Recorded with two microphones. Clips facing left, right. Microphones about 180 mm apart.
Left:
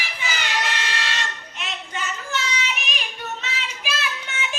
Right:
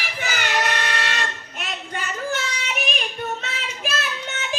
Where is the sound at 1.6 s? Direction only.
55° right (ahead or behind).